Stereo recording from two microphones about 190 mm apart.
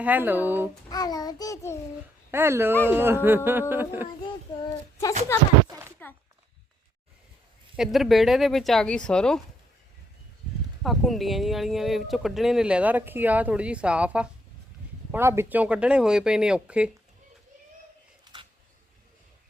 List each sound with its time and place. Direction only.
0.0 s speech: 10° right (ahead or behind)
0.9 s a child's voice: 20° left (ahead or behind)
2.3 s speech: 10° right (ahead or behind)
4.3 s a child's voice: 20° left (ahead or behind)
5.6 s a sound: 20° right (ahead or behind)
7.8 s speech: centre (ahead or behind)
10.8 s speech: centre (ahead or behind)
18.3 s a sound: 20° right (ahead or behind)